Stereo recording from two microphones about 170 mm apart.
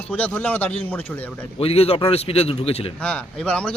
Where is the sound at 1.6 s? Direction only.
35° left (ahead or behind).